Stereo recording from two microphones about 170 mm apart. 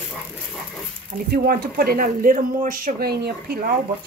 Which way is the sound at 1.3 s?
60° right (ahead or behind).